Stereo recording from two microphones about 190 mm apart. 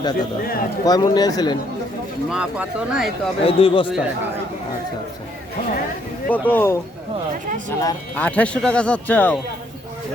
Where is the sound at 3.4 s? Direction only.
30° left (ahead or behind).